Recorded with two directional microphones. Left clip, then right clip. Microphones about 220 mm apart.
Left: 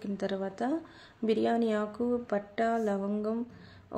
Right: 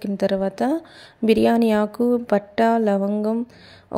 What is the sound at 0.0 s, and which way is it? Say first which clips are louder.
A woman's voice: right 12 dB; 35° right (ahead or behind).